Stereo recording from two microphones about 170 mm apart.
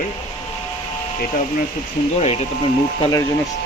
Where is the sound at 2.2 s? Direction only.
40° left (ahead or behind).